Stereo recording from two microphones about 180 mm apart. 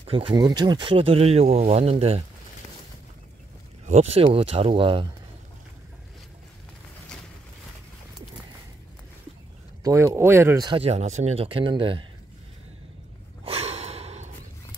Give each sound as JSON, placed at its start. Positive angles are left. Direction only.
{"t": 0.0, "sound": "speech", "side_deg": -30}
{"t": 3.8, "sound": "speech", "side_deg": -35}
{"t": 9.8, "sound": "speech", "side_deg": -15}
{"t": 13.4, "sound": "a sound", "side_deg": -35}